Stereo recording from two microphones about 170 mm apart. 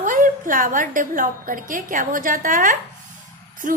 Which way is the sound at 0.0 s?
50° right (ahead or behind).